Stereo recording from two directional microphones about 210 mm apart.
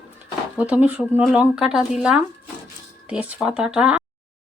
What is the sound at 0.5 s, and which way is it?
Speech, 5° right (ahead or behind).